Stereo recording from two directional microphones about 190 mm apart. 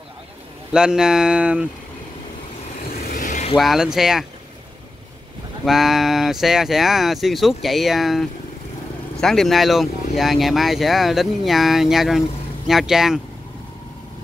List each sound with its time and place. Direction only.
0.7 s speech: 5° right (ahead or behind)
3.2 s vehicle: 40° left (ahead or behind)
3.5 s speech: centre (ahead or behind)
5.7 s speech: centre (ahead or behind)